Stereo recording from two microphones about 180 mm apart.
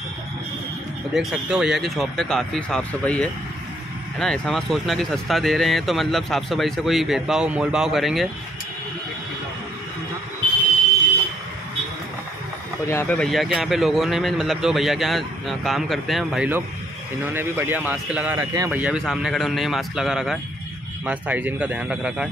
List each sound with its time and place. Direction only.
1.1 s speech: 5° right (ahead or behind)
12.8 s a man's voice: 15° left (ahead or behind); by 18.7 s 20° right (ahead or behind)
18.7 s a man's voice: 5° right (ahead or behind)